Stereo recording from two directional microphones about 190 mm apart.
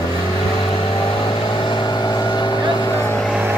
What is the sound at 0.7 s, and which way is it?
Vehicle, 25° left (ahead or behind).